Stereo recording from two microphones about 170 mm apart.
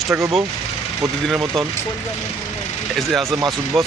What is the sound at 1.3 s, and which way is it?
Speech, centre (ahead or behind).